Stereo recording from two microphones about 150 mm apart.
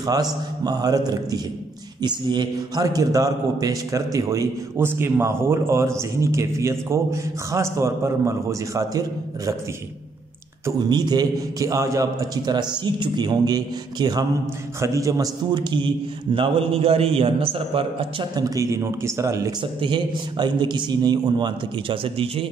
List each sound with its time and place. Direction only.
0.0 s a man's voice: 25° right (ahead or behind)
10.6 s a man's voice: 30° right (ahead or behind)
18.3 s a man's voice: 25° right (ahead or behind)
19.8 s a man's voice: 30° right (ahead or behind)